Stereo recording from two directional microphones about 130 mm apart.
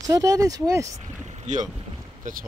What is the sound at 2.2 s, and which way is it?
Speech, 85° right.